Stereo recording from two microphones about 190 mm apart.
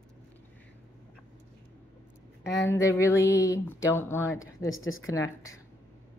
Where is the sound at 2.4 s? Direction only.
65° left (ahead or behind).